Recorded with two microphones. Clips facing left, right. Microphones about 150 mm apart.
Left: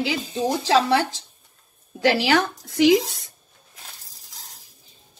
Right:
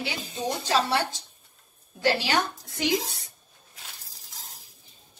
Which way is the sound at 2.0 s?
90° left.